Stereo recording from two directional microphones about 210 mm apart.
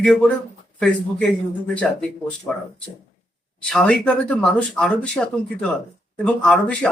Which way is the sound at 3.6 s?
5° left (ahead or behind).